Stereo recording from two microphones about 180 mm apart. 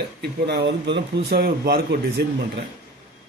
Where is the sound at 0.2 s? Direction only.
70° right (ahead or behind).